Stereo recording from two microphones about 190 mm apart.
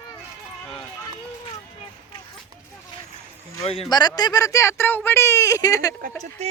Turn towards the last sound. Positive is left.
turn(degrees=-35)  # may be behind; listen again after turning